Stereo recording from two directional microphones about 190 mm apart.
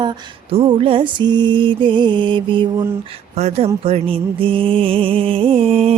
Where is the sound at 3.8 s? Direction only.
30° right (ahead or behind).